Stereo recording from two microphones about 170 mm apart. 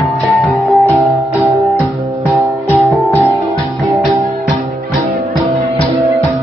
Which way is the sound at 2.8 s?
15° left (ahead or behind).